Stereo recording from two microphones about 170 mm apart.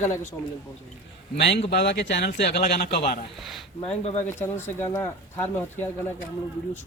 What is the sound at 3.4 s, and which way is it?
Speech, centre (ahead or behind).